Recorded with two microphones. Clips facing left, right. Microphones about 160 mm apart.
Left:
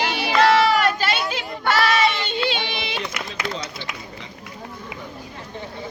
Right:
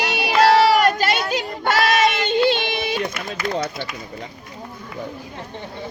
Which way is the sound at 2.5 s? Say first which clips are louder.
Right 6 dB; 45° right (ahead or behind).